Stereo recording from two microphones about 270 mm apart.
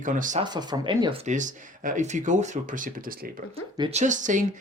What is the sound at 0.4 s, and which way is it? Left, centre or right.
Speech, centre.